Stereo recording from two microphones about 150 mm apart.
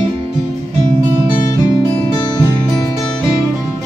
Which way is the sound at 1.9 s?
25° left (ahead or behind).